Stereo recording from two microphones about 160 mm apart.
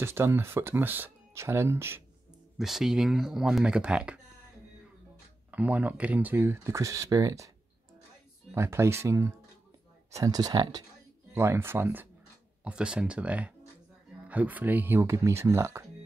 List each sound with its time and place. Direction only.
0.0 s speech: 15° right (ahead or behind)
2.6 s speech: centre (ahead or behind)
5.5 s speech: 10° right (ahead or behind)